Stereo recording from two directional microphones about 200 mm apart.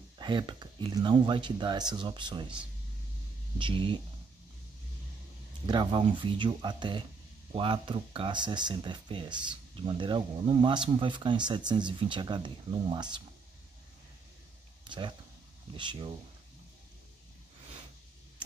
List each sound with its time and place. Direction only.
0.2 s speech: 25° right (ahead or behind)
5.7 s speech: 25° right (ahead or behind)
14.9 s speech: 25° right (ahead or behind)